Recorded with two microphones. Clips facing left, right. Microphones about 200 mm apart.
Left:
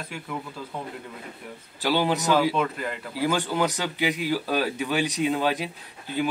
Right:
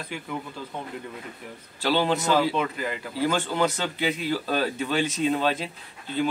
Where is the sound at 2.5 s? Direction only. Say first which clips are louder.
Even; centre (ahead or behind).